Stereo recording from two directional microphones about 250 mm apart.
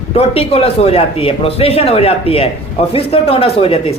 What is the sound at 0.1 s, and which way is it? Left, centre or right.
Speech, left.